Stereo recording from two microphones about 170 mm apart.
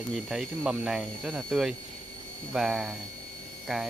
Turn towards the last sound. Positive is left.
turn(degrees=-5)  # may be behind; listen again after turning